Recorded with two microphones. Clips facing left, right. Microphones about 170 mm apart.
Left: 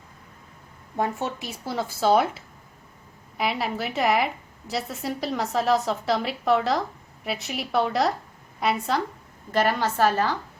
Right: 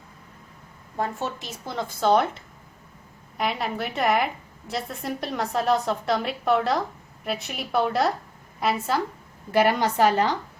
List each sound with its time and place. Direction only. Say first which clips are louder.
0.9 s a woman's voice: left 2 dB; 15° left (ahead or behind); by 9.0 s centre (ahead or behind)
9.5 s a woman's voice: right 2 dB; 10° right (ahead or behind)